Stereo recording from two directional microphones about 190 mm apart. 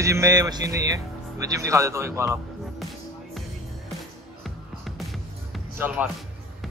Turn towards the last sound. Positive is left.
turn(degrees=-10)  # may be behind; listen again after turning